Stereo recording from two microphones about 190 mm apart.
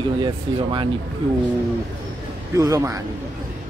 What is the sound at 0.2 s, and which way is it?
Speech, 25° right (ahead or behind).